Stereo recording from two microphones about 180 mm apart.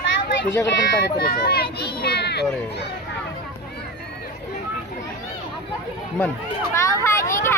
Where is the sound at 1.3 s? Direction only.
60° left (ahead or behind).